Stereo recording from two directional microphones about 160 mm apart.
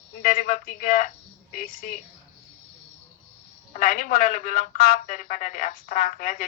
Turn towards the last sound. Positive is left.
turn(degrees=55)  # may be behind; listen again after turning